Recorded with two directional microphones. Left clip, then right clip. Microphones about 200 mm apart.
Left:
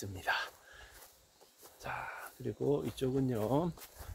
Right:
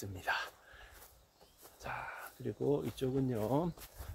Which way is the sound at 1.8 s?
5° left (ahead or behind).